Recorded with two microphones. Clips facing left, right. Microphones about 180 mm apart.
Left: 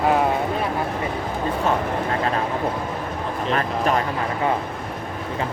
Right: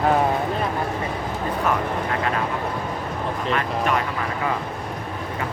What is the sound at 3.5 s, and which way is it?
Speech, 35° left (ahead or behind).